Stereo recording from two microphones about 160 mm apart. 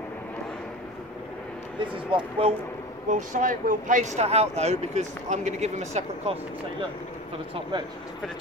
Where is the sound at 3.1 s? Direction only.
55° right (ahead or behind).